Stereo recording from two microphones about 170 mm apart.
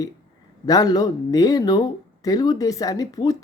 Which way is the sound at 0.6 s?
20° left (ahead or behind).